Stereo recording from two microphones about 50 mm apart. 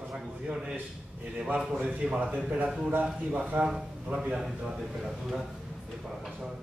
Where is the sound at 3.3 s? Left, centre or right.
Right.